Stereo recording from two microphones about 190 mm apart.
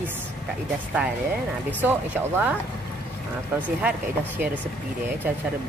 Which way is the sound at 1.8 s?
10° right (ahead or behind).